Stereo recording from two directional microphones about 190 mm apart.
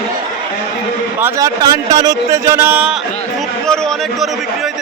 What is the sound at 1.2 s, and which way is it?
Speech, 15° right (ahead or behind).